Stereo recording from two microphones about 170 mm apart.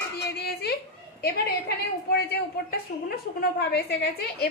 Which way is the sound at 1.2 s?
70° left (ahead or behind).